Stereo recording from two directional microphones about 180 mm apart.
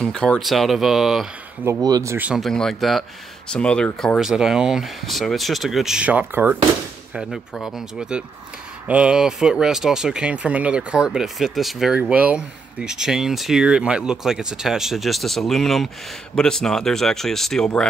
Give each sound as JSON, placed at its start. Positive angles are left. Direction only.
{"t": 0.0, "sound": "speech", "side_deg": 5}
{"t": 1.7, "sound": "speech", "side_deg": -20}
{"t": 2.1, "sound": "speech", "side_deg": -5}